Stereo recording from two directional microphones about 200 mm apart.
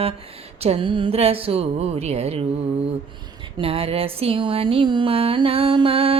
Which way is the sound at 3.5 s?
30° right (ahead or behind).